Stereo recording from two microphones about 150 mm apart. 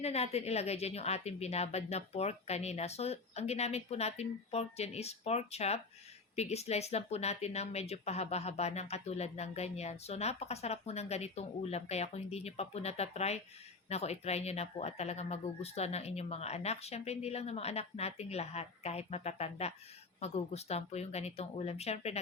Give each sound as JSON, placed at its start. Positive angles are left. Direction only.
{"t": 0.0, "sound": "speech", "side_deg": 45}